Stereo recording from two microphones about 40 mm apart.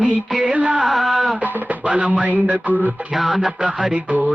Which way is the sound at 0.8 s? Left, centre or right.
Centre.